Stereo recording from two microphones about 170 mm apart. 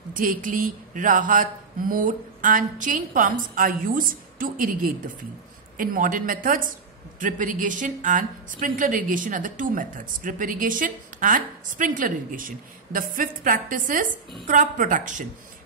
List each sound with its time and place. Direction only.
0.1 s a woman's voice: 55° right (ahead or behind)